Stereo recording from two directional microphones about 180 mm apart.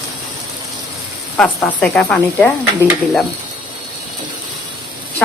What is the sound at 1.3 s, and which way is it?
Speech, 5° left (ahead or behind).